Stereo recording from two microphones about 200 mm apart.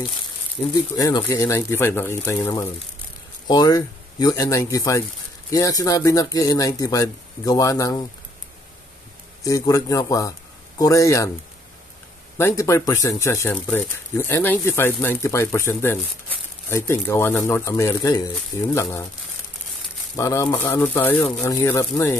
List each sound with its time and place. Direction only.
0.9 s speech: 15° left (ahead or behind)
9.4 s speech: 15° left (ahead or behind)
12.4 s speech: 15° left (ahead or behind)
20.2 s speech: 15° left (ahead or behind)